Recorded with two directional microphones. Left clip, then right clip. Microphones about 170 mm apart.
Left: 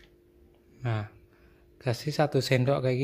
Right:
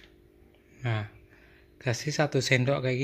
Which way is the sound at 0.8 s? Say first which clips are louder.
Right 1 dB; 5° left (ahead or behind).